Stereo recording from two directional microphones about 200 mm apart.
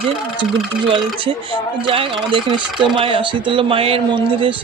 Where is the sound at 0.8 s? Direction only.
25° right (ahead or behind).